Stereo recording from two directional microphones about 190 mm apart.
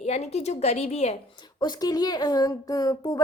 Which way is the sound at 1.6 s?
20° left (ahead or behind).